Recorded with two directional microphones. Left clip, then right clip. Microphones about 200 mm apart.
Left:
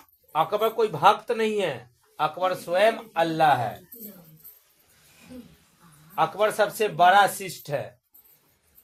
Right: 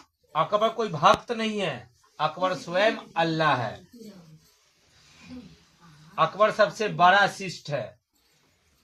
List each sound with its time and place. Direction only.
0.3 s speech: 40° left (ahead or behind)
6.1 s speech: 35° left (ahead or behind)